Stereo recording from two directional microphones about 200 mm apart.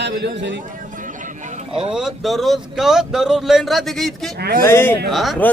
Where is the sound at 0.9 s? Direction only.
40° right (ahead or behind).